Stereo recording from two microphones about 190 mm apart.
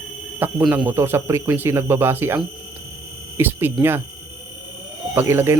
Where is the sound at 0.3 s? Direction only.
10° right (ahead or behind).